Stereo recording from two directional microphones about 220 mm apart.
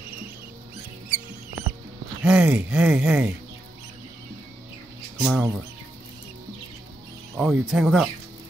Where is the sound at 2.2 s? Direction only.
5° right (ahead or behind).